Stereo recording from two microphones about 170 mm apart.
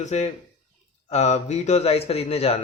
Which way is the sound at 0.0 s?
40° left (ahead or behind).